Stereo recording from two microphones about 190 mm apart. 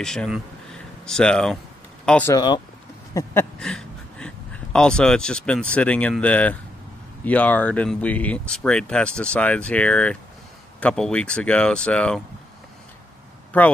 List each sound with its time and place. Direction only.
0.0 s speech: 5° left (ahead or behind)
2.3 s speech: 20° left (ahead or behind)
3.5 s a sound: 5° left (ahead or behind)
4.7 s speech: 5° left (ahead or behind)
13.5 s speech: 10° left (ahead or behind)